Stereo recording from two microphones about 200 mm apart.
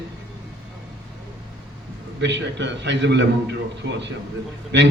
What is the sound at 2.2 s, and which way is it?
A man's voice, 60° right (ahead or behind).